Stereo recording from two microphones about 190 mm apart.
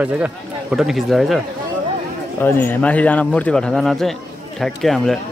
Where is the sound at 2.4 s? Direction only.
10° left (ahead or behind).